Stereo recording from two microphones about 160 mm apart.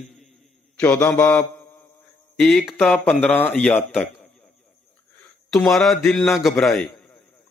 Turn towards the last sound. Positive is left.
turn(degrees=0)  # may be behind; listen again after turning